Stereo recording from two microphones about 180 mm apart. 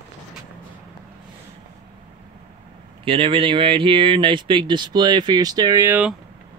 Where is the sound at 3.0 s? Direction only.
30° right (ahead or behind).